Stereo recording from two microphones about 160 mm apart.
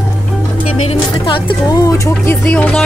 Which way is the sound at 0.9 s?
30° left (ahead or behind).